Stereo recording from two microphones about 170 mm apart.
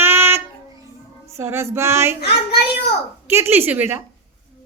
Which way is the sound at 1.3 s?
15° right (ahead or behind).